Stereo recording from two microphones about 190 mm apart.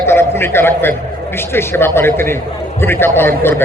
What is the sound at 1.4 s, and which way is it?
A man's voice, 10° left (ahead or behind).